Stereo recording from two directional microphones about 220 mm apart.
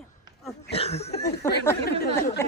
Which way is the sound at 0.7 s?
25° left (ahead or behind).